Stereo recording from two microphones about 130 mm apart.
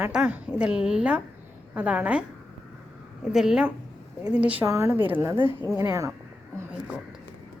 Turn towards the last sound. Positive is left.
turn(degrees=-25)  # may be behind; listen again after turning